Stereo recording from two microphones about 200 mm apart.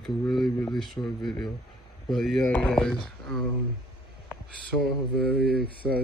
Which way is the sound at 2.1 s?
Centre (ahead or behind).